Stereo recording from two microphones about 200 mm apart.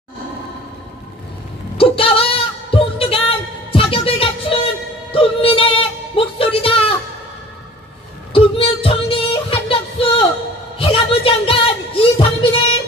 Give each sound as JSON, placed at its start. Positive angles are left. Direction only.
{"t": 1.8, "sound": "music", "side_deg": 25}
{"t": 8.3, "sound": "music", "side_deg": 25}
{"t": 10.8, "sound": "a sound", "side_deg": 25}